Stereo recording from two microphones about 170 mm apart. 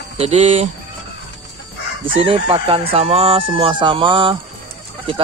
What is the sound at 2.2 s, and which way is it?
Chicken, 30° right (ahead or behind).